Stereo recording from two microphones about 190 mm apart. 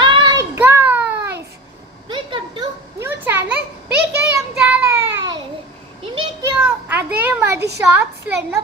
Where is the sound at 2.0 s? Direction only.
25° right (ahead or behind).